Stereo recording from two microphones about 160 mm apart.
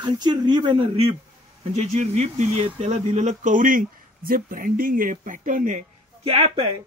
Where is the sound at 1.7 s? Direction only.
45° right (ahead or behind).